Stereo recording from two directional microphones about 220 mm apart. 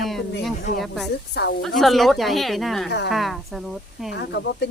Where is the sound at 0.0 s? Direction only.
Centre (ahead or behind).